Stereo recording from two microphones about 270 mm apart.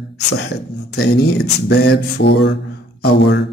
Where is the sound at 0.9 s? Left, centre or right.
Left.